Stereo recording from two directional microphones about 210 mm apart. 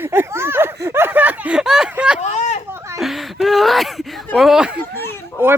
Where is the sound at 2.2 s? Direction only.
35° left (ahead or behind).